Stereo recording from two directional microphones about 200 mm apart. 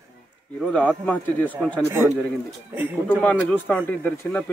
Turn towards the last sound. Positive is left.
turn(degrees=5)  # may be behind; listen again after turning